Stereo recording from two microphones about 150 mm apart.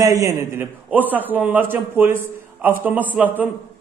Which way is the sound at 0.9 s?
10° right (ahead or behind).